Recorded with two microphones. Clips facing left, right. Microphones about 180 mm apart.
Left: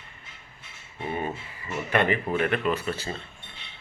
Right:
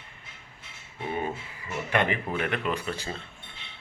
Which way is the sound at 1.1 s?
5° right (ahead or behind).